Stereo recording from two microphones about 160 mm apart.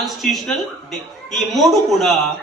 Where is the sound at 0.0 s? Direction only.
Centre (ahead or behind).